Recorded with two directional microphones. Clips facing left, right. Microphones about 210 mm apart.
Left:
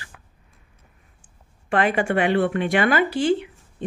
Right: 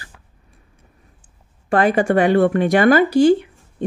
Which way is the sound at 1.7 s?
40° right (ahead or behind).